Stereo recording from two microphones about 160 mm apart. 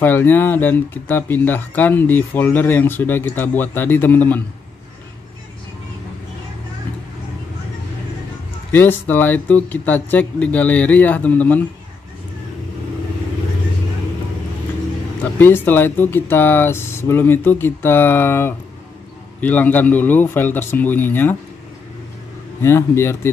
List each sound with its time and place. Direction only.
0.0 s speech: 10° left (ahead or behind)
8.7 s speech: 10° left (ahead or behind)
15.3 s speech: 15° left (ahead or behind)
22.6 s speech: 15° left (ahead or behind)